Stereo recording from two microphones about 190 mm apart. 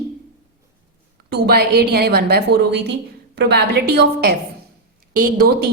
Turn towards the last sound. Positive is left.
turn(degrees=-50)  # may be behind; listen again after turning